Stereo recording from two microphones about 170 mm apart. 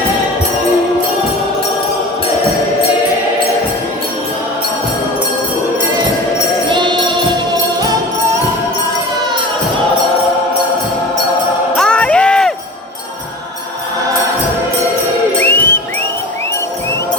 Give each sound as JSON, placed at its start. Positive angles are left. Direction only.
{"t": 6.7, "sound": "music", "side_deg": -25}
{"t": 11.8, "sound": "a sound", "side_deg": 5}
{"t": 15.4, "sound": "music", "side_deg": 15}